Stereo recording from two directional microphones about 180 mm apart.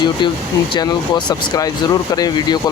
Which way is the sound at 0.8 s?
20° left (ahead or behind).